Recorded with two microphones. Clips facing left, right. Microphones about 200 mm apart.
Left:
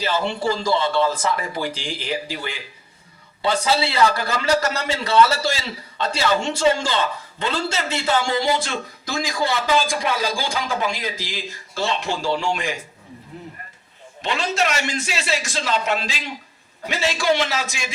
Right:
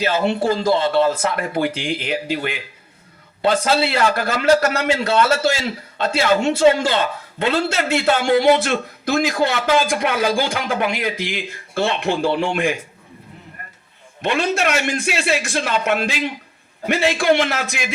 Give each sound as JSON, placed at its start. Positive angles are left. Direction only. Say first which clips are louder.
{"t": 0.0, "sound": "a man's voice", "louder": "right 4 dB", "side_deg": -50}
{"t": 14.2, "sound": "a man's voice", "louder": "right 3 dB", "side_deg": -55}